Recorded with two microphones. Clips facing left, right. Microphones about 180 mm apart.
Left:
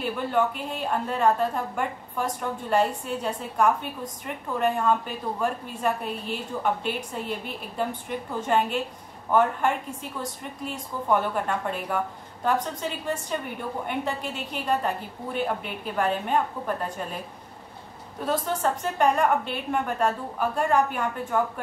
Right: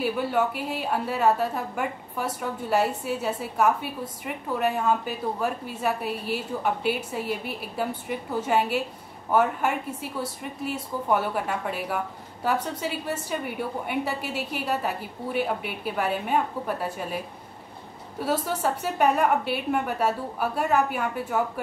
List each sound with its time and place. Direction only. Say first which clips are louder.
0.0 s a woman's voice: right 1 dB; 5° right (ahead or behind)
18.2 s a woman's voice: even; 10° right (ahead or behind)